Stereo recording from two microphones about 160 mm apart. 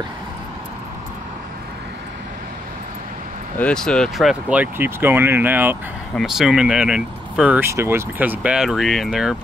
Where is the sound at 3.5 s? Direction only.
5° left (ahead or behind).